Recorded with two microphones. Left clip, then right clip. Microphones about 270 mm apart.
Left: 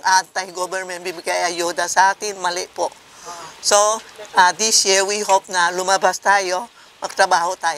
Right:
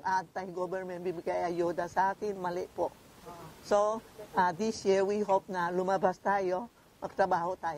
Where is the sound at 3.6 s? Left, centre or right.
Centre.